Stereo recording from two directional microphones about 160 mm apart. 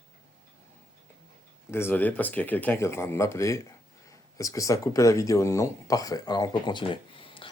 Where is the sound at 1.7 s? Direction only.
15° left (ahead or behind).